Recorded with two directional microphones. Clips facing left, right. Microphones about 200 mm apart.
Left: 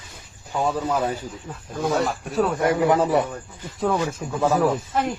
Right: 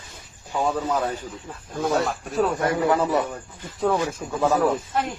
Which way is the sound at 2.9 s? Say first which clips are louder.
Left 2 dB; 10° left (ahead or behind).